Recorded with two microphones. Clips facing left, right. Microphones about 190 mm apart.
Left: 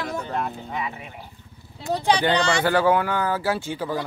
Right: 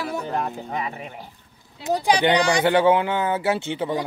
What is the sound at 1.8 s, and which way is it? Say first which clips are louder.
Speech: right 2 dB; 15° right (ahead or behind).